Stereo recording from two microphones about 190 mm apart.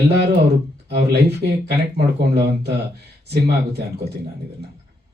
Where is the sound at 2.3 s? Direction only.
60° right (ahead or behind).